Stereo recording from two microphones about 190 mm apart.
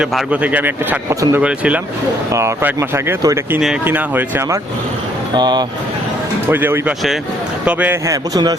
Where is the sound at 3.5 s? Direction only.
5° right (ahead or behind).